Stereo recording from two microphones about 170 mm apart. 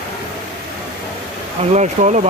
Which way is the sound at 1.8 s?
45° right (ahead or behind).